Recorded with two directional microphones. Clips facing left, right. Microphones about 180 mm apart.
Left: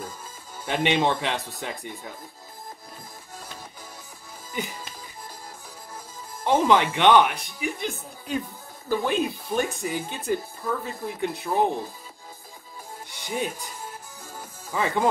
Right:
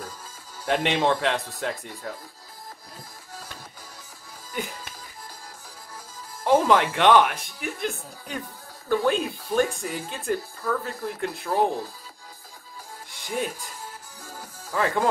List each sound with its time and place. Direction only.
0.7 s speech: centre (ahead or behind)
6.4 s speech: centre (ahead or behind)
10.6 s speech: 20° left (ahead or behind)
11.1 s speech: centre (ahead or behind)
13.1 s music: centre (ahead or behind)
14.7 s speech: centre (ahead or behind)